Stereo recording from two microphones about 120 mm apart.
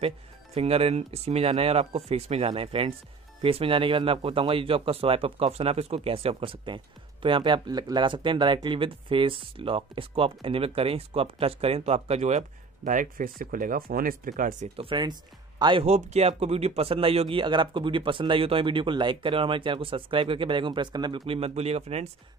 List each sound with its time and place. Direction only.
0.6 s speech: 55° right (ahead or behind); by 13.1 s 90° right
14.8 s speech: 40° right (ahead or behind)
15.8 s speech: 60° right (ahead or behind)